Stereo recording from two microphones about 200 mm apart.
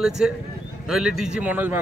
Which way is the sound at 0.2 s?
5° right (ahead or behind).